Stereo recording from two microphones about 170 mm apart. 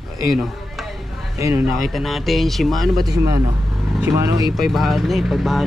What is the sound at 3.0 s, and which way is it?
Speech, 20° right (ahead or behind).